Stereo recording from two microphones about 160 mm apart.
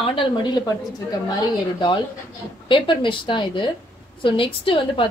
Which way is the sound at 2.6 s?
30° left (ahead or behind).